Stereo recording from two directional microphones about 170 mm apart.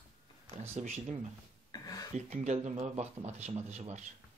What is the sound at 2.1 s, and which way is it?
Speech, 40° right (ahead or behind).